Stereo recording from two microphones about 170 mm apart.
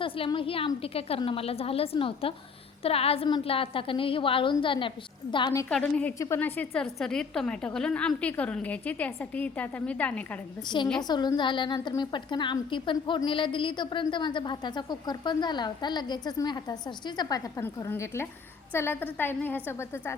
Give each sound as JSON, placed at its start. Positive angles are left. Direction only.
{"t": 0.0, "sound": "a woman's voice", "side_deg": 30}
{"t": 5.6, "sound": "a woman's voice", "side_deg": 5}
{"t": 10.7, "sound": "a woman's voice", "side_deg": 30}